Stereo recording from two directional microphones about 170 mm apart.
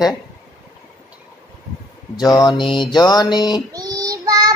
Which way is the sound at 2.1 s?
25° left (ahead or behind).